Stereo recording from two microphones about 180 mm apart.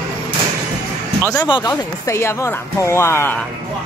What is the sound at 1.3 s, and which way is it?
Speech, 25° left (ahead or behind).